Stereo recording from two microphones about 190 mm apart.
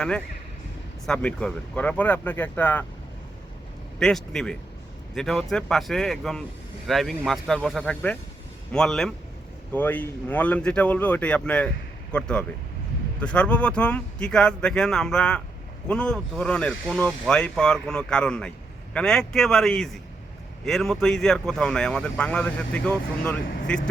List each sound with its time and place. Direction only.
1.0 s speech: 5° left (ahead or behind)
4.0 s speech: 5° left (ahead or behind)